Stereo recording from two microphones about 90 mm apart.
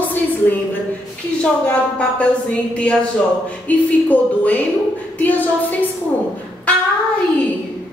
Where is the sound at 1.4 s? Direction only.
15° left (ahead or behind).